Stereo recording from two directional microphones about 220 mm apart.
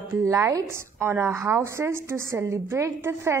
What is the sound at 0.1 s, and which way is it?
A woman's voice, 15° right (ahead or behind).